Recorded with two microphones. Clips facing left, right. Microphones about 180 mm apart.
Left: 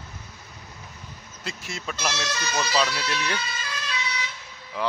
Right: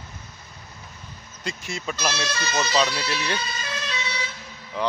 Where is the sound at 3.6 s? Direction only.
25° right (ahead or behind).